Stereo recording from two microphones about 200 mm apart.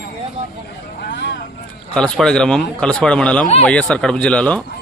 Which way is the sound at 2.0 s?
5° left (ahead or behind).